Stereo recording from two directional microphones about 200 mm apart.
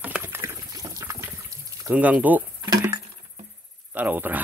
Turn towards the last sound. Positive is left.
turn(degrees=-10)  # may be behind; listen again after turning